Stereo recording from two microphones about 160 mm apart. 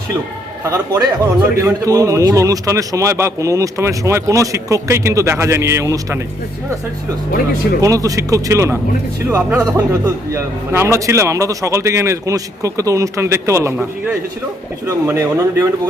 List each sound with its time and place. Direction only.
0.6 s a man's voice: 20° right (ahead or behind)
7.8 s a man's voice: 20° right (ahead or behind)
14.8 s a man's voice: 15° right (ahead or behind)